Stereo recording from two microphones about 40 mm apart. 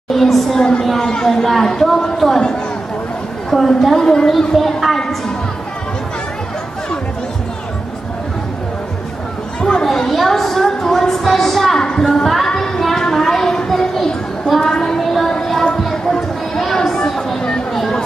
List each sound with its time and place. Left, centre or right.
0.1 s a woman's voice: centre
3.4 s a woman's voice: centre
9.6 s chatter: centre
9.8 s a woman's voice: centre
11.8 s a woman's voice: centre
12.1 s speech: centre
12.4 s a sound: centre
14.6 s a sound: centre
15.2 s music: centre
15.8 s chatter: centre
17.4 s a sound: left